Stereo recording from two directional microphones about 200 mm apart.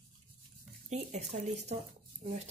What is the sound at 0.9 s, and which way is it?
Stir, 35° right (ahead or behind).